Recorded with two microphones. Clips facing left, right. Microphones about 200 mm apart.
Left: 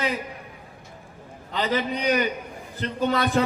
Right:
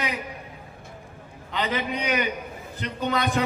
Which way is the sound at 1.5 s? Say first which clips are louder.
Left 2 dB; 35° left (ahead or behind).